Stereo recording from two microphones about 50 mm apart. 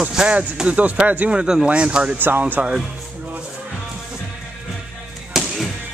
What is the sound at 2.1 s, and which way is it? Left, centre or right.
Speech, right.